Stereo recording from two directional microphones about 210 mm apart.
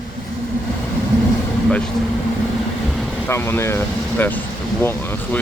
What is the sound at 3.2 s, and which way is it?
Speech, 10° left (ahead or behind).